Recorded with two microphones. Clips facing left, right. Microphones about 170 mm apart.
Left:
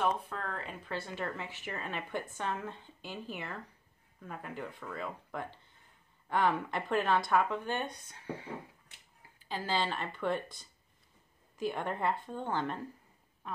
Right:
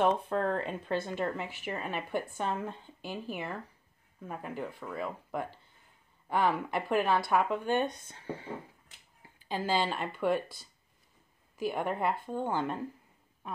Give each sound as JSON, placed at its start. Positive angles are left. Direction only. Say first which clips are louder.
{"t": 0.0, "sound": "speech", "louder": "right 6 dB", "side_deg": -30}
{"t": 1.0, "sound": "speech", "louder": "right 5 dB", "side_deg": -15}
{"t": 9.5, "sound": "speech", "louder": "right 3 dB", "side_deg": -15}